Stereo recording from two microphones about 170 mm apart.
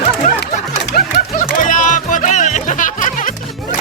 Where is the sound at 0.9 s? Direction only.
65° left (ahead or behind).